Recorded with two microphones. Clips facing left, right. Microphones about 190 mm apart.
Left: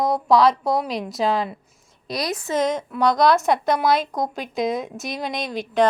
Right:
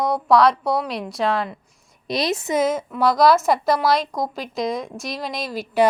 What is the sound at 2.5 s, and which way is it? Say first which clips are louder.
A woman's voice: even; 5° right (ahead or behind).